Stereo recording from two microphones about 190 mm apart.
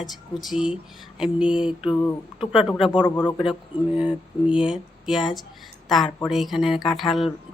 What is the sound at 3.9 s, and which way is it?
Speech, 5° right (ahead or behind).